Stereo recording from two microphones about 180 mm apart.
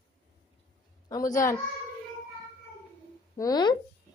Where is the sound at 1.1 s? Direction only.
20° left (ahead or behind).